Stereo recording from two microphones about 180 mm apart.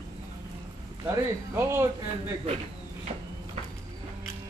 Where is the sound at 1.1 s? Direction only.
15° right (ahead or behind).